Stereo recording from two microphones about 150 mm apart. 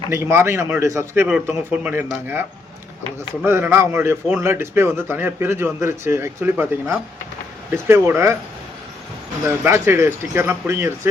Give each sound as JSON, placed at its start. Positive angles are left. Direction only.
{"t": 0.1, "sound": "a man's voice", "side_deg": -20}
{"t": 3.4, "sound": "a man's voice", "side_deg": -15}
{"t": 9.6, "sound": "a man's voice", "side_deg": -15}